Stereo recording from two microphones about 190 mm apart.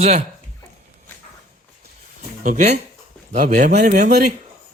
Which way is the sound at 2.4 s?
40° right (ahead or behind).